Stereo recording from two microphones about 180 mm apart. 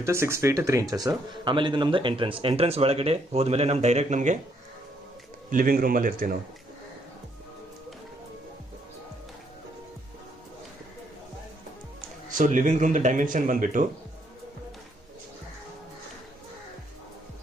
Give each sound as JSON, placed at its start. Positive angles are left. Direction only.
{"t": 0.0, "sound": "a man's voice", "side_deg": -15}
{"t": 5.5, "sound": "speech", "side_deg": -50}
{"t": 12.3, "sound": "speech", "side_deg": -45}